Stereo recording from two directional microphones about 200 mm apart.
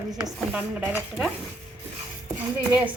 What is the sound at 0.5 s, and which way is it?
Speech, 10° right (ahead or behind).